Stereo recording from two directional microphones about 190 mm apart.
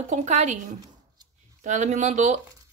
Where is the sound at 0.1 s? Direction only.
40° right (ahead or behind).